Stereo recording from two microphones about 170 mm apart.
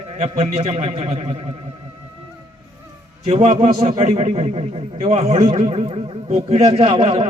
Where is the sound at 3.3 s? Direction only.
35° right (ahead or behind).